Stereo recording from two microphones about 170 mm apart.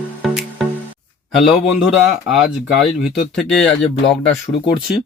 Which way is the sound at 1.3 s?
Centre (ahead or behind).